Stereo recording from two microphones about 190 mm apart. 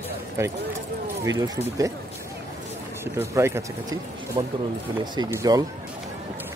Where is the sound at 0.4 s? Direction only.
15° right (ahead or behind).